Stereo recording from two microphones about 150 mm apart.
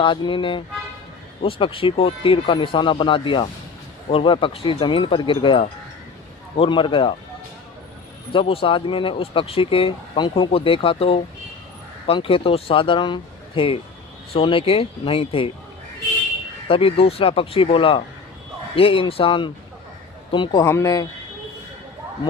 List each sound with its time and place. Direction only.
0.0 s speech: 35° left (ahead or behind)
8.3 s speech: 35° left (ahead or behind)
14.3 s speech: 35° left (ahead or behind)
16.6 s speech: 40° left (ahead or behind)